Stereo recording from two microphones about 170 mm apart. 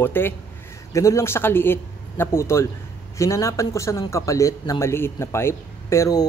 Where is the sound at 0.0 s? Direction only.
10° left (ahead or behind).